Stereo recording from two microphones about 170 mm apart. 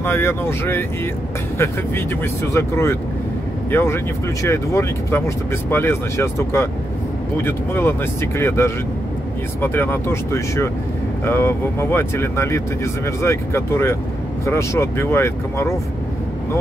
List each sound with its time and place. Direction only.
0.0 s speech: 15° left (ahead or behind)
2.5 s speech: 15° left (ahead or behind)